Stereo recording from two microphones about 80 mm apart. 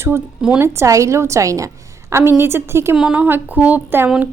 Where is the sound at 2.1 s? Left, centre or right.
Right.